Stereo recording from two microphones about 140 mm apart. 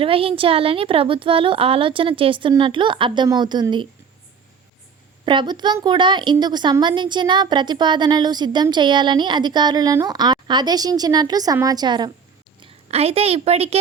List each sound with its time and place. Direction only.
0.0 s a woman's voice: 40° right (ahead or behind)
5.2 s a woman's voice: 35° right (ahead or behind)
12.9 s a woman's voice: 45° right (ahead or behind)